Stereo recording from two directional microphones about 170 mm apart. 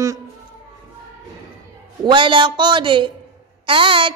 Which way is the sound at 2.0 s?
30° right (ahead or behind).